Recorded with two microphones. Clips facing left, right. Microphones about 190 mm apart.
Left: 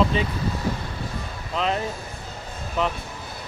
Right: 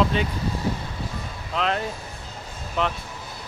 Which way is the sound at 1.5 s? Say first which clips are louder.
Even; centre (ahead or behind).